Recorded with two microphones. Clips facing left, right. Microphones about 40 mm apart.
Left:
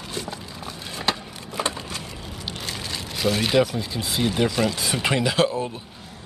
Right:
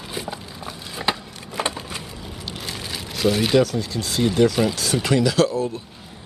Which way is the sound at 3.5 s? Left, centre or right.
Centre.